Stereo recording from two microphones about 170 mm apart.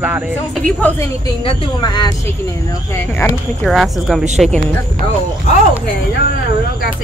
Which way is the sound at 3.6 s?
Centre (ahead or behind).